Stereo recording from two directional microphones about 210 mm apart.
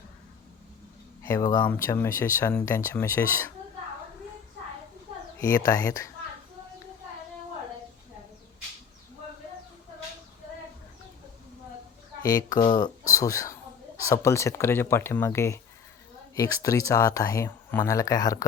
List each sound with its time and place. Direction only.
1.2 s speech: 15° left (ahead or behind)
5.4 s speech: 15° left (ahead or behind)
12.2 s speech: 15° left (ahead or behind)